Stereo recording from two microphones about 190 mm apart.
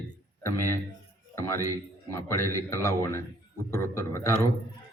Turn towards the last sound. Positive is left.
turn(degrees=15)  # may be behind; listen again after turning